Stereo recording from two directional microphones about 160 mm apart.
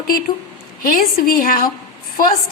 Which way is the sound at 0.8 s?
65° left (ahead or behind).